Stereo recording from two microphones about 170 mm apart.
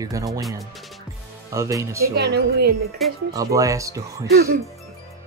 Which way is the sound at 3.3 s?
20° right (ahead or behind).